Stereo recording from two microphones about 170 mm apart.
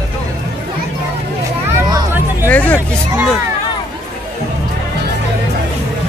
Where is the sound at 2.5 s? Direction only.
10° left (ahead or behind).